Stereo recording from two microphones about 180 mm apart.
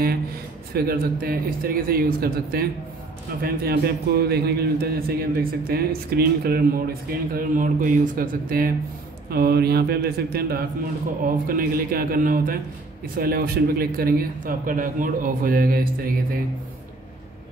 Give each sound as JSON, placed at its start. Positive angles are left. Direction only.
{"t": 0.7, "sound": "a man's voice", "side_deg": -55}